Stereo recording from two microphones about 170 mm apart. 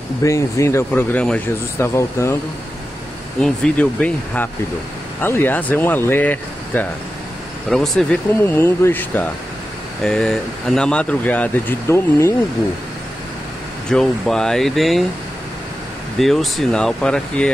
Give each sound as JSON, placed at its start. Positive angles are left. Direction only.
{"t": 0.2, "sound": "speech", "side_deg": 15}
{"t": 3.3, "sound": "speech", "side_deg": 5}
{"t": 13.8, "sound": "speech", "side_deg": 5}
{"t": 16.2, "sound": "speech", "side_deg": 0}